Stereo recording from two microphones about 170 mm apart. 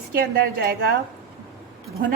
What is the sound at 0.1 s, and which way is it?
Speech, 65° right (ahead or behind).